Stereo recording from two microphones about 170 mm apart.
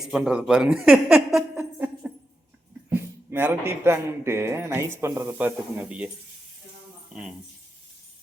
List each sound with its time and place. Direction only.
0.0 s speech: 5° right (ahead or behind)
1.5 s a sound: 10° right (ahead or behind)
3.2 s a man's voice: 15° right (ahead or behind)
7.1 s speech: 5° right (ahead or behind)